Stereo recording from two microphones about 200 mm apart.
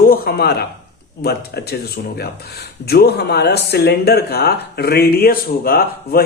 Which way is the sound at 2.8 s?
50° left (ahead or behind).